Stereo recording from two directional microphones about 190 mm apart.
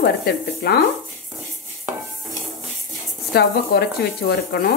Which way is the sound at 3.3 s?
55° left (ahead or behind).